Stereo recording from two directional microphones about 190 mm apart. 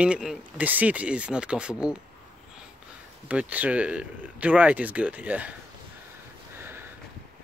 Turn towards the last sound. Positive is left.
turn(degrees=-10)  # may be behind; listen again after turning